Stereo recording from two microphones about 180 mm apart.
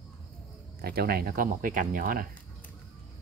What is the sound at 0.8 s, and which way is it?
Speech, 60° right (ahead or behind).